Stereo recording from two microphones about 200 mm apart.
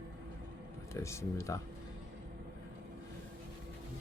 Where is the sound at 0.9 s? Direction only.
15° left (ahead or behind).